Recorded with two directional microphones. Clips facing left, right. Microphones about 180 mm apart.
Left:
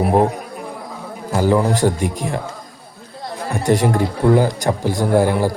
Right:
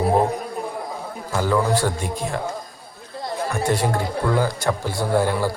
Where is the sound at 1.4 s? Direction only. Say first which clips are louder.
Left 4 dB; 20° left (ahead or behind).